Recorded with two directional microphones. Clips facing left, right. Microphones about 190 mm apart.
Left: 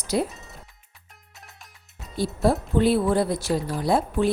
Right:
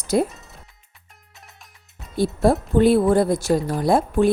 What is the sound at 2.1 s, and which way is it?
A woman's voice, 50° right (ahead or behind).